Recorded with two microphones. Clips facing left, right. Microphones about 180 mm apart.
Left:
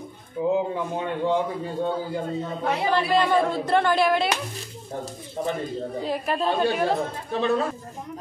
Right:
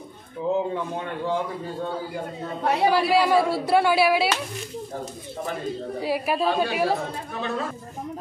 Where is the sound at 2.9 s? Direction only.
5° right (ahead or behind).